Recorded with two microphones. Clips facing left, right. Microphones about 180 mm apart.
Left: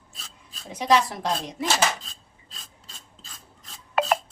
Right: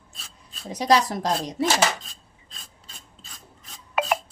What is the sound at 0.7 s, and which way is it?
Speech, 40° right (ahead or behind).